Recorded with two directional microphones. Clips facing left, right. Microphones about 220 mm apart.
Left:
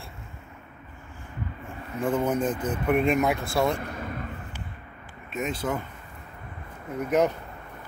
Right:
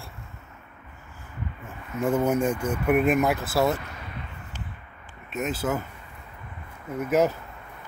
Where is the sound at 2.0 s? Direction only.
10° right (ahead or behind).